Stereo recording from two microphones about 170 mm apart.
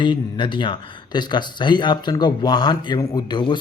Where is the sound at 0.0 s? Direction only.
30° left (ahead or behind).